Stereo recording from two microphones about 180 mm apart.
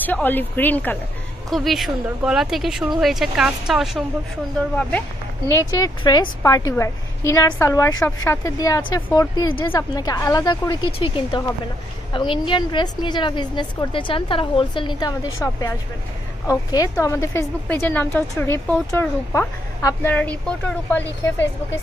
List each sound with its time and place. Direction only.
0.0 s a woman's voice: 10° left (ahead or behind)
1.5 s speech: centre (ahead or behind)
5.8 s a woman's voice: 20° left (ahead or behind)